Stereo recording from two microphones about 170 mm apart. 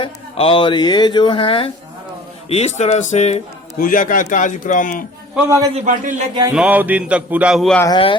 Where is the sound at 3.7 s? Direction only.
55° left (ahead or behind).